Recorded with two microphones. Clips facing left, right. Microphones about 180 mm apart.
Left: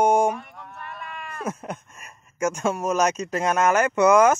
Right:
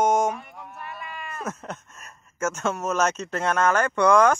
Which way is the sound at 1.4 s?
10° left (ahead or behind).